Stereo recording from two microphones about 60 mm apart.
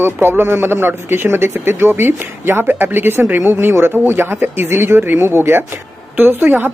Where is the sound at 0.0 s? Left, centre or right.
Right.